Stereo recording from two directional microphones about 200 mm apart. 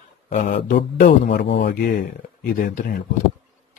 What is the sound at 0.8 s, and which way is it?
A man's voice, 55° left (ahead or behind).